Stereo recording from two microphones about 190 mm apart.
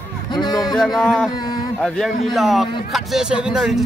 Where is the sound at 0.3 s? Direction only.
25° left (ahead or behind).